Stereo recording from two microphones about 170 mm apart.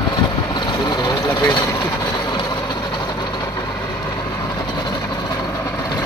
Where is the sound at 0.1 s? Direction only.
25° left (ahead or behind).